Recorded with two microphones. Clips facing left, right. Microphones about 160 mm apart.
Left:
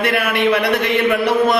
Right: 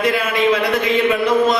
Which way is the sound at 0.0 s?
65° left (ahead or behind).